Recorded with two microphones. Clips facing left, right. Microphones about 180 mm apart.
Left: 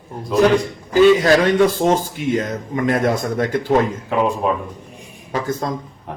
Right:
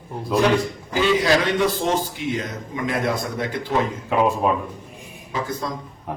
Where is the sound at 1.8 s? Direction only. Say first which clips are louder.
Left 5 dB; 45° left (ahead or behind).